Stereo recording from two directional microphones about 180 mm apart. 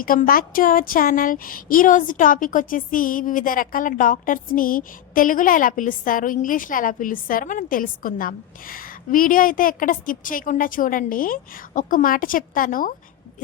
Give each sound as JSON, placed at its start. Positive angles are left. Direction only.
{"t": 0.0, "sound": "speech", "side_deg": 50}